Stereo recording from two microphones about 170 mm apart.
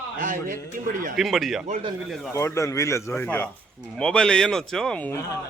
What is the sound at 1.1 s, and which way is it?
A man's voice, centre (ahead or behind).